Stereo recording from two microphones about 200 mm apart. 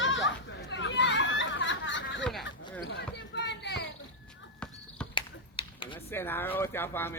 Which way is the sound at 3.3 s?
60° left (ahead or behind).